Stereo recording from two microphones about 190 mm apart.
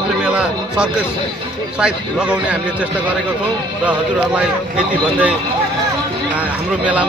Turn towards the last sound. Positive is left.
turn(degrees=-5)  # may be behind; listen again after turning